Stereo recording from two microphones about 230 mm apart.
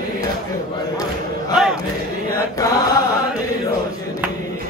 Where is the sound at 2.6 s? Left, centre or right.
Centre.